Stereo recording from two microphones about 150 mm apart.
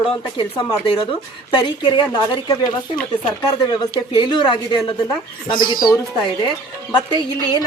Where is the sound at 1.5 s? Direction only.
30° left (ahead or behind).